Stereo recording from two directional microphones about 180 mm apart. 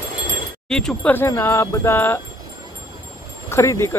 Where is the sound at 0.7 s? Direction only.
5° left (ahead or behind).